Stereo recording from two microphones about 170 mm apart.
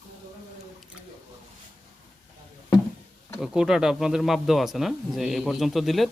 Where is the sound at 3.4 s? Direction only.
5° right (ahead or behind).